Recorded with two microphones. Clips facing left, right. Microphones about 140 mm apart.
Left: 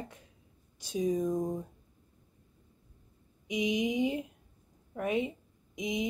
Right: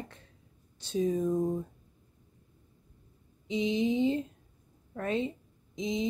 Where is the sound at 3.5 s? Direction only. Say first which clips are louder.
Right 2 dB; 15° left (ahead or behind).